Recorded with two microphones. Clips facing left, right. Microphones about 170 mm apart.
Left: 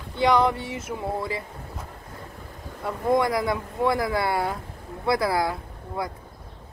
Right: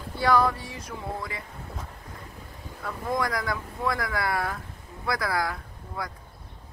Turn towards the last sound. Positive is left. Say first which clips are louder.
# left 5 dB
turn(degrees=25)  # may be behind; listen again after turning